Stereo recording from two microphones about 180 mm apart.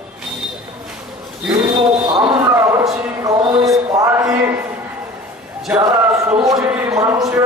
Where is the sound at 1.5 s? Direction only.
25° right (ahead or behind).